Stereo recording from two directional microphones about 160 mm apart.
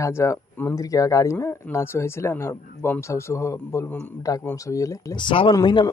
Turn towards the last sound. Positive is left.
turn(degrees=25)  # may be behind; listen again after turning